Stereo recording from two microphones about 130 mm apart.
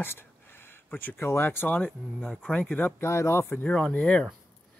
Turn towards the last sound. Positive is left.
turn(degrees=5)  # may be behind; listen again after turning